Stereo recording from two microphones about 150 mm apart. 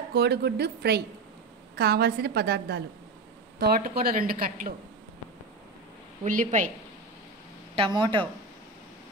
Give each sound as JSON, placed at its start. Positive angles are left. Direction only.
{"t": 0.1, "sound": "speech", "side_deg": -90}
{"t": 6.2, "sound": "a woman's voice", "side_deg": -60}
{"t": 7.7, "sound": "speech", "side_deg": -35}